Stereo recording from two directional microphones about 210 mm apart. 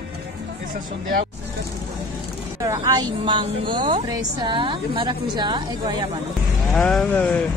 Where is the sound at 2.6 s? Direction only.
15° right (ahead or behind).